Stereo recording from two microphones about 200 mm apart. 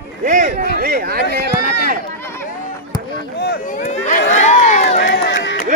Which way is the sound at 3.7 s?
40° left (ahead or behind).